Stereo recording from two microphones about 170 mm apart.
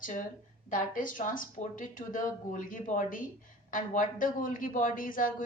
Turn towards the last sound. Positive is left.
turn(degrees=55)  # may be behind; listen again after turning